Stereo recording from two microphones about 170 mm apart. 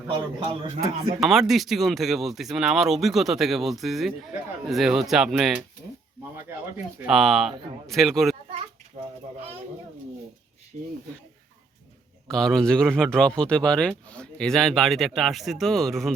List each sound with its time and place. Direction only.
0.1 s a man's voice: 30° right (ahead or behind)
1.2 s speech: centre (ahead or behind)
7.1 s speech: centre (ahead or behind)
10.7 s speech: 45° right (ahead or behind)
12.3 s speech: 5° left (ahead or behind)